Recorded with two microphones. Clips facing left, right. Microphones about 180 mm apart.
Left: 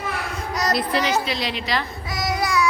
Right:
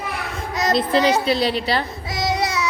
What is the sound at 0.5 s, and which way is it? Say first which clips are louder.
Child singing: right 4 dB; 25° right (ahead or behind).